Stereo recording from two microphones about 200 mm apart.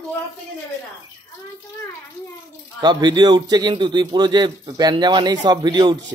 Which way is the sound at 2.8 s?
20° right (ahead or behind).